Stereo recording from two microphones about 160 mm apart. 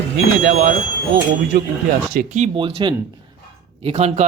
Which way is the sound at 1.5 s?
75° right (ahead or behind).